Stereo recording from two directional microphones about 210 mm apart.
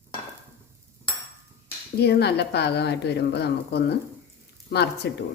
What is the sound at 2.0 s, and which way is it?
A woman's voice, 50° left (ahead or behind).